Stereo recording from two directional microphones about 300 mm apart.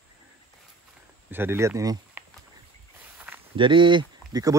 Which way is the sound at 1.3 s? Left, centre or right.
Centre.